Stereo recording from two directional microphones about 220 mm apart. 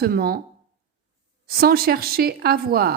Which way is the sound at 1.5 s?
45° right (ahead or behind).